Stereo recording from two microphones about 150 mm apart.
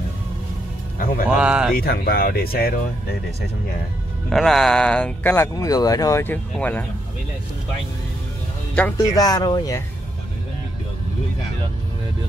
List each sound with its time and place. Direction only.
0.9 s music: 70° left (ahead or behind)
1.3 s speech: 5° right (ahead or behind)
1.8 s speech: 85° left
4.3 s speech: centre (ahead or behind)
5.5 s speech: 25° left (ahead or behind); by 6.9 s 10° left (ahead or behind)
8.9 s speech: 25° left (ahead or behind)